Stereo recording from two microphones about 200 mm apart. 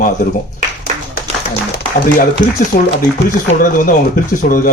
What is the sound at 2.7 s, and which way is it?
Speech, 50° left (ahead or behind).